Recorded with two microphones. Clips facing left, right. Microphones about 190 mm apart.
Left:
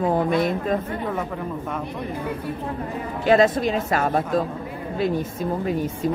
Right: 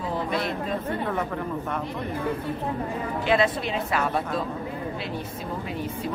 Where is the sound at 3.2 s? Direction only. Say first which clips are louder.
Left 7 dB; 45° left (ahead or behind).